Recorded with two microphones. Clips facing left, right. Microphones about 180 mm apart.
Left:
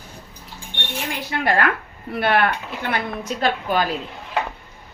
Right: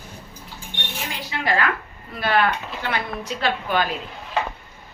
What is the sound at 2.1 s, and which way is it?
A woman's voice, 60° left (ahead or behind).